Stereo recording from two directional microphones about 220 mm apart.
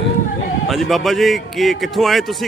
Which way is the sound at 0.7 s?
Centre (ahead or behind).